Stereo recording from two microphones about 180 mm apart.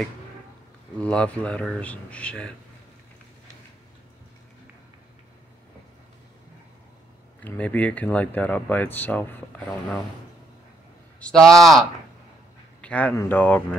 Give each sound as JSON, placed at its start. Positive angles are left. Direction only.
{"t": 0.9, "sound": "speech", "side_deg": 5}
{"t": 7.4, "sound": "speech", "side_deg": 10}
{"t": 11.1, "sound": "a man's voice", "side_deg": 5}
{"t": 12.8, "sound": "speech", "side_deg": 10}